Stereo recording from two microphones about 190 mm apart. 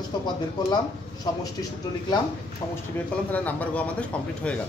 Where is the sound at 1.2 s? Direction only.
20° left (ahead or behind).